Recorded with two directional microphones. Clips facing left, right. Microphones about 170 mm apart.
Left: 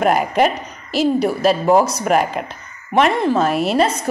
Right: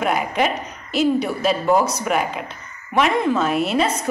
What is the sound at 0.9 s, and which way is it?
A woman's voice, 40° left (ahead or behind).